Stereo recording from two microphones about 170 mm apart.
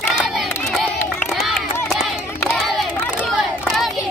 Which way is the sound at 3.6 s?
Centre (ahead or behind).